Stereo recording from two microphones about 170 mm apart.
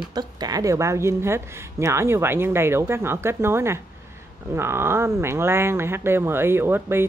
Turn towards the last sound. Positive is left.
turn(degrees=-15)  # may be behind; listen again after turning